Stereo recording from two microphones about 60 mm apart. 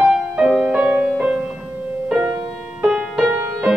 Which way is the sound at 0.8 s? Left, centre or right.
Right.